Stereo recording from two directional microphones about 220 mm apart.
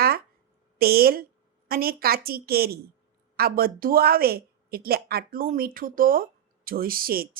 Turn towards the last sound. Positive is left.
turn(degrees=-40)  # may be behind; listen again after turning